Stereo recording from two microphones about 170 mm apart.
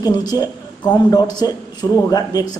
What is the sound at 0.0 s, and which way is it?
A man's voice, 20° left (ahead or behind).